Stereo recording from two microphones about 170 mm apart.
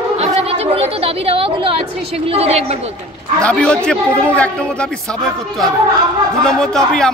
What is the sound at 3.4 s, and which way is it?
A man's voice, 5° left (ahead or behind).